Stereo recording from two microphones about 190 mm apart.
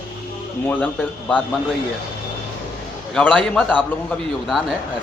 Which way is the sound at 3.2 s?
5° left (ahead or behind).